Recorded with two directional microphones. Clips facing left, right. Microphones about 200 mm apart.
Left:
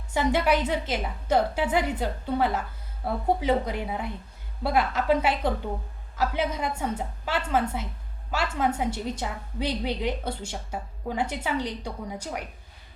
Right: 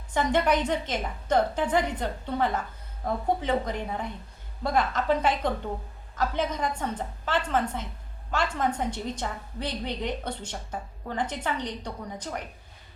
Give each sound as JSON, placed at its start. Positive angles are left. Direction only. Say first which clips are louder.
{"t": 0.1, "sound": "a woman's voice", "louder": "left 1 dB", "side_deg": 10}